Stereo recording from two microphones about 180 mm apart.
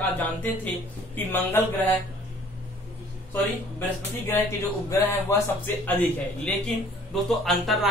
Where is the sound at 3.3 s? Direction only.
10° left (ahead or behind).